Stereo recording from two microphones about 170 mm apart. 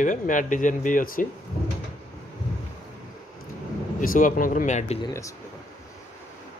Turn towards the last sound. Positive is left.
turn(degrees=20)  # may be behind; listen again after turning